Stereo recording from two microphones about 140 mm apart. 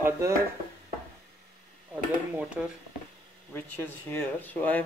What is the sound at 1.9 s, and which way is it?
Speech, 10° right (ahead or behind).